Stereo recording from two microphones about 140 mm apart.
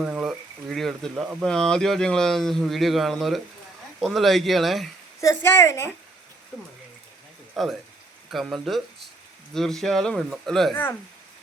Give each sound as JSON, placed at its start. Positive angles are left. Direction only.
{"t": 0.0, "sound": "speech", "side_deg": -5}
{"t": 5.2, "sound": "a woman's voice", "side_deg": 20}
{"t": 7.5, "sound": "speech", "side_deg": 0}